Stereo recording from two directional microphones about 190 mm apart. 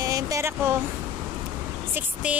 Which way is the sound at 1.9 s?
5° right (ahead or behind).